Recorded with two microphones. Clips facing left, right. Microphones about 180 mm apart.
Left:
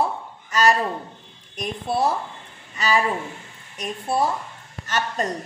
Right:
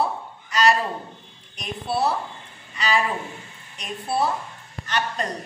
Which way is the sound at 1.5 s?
45° left (ahead or behind).